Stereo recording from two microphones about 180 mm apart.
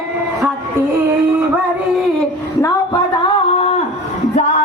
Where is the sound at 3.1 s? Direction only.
35° left (ahead or behind).